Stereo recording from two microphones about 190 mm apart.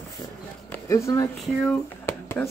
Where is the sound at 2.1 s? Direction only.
15° left (ahead or behind).